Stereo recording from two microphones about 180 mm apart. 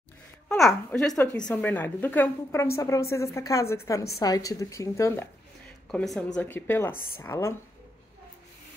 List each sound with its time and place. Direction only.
0.6 s a woman's voice: centre (ahead or behind)
5.9 s a woman's voice: centre (ahead or behind)